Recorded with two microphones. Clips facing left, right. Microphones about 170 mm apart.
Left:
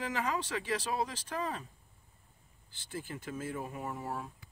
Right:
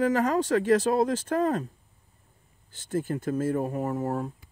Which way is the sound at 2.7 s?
45° right (ahead or behind).